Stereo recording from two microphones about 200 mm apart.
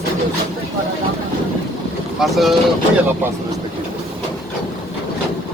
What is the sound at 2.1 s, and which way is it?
Speech, centre (ahead or behind).